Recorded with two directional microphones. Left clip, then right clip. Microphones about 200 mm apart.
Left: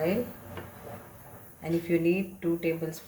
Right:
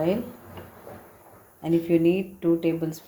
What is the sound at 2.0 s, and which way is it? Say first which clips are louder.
Speech: right 5 dB; 35° right (ahead or behind).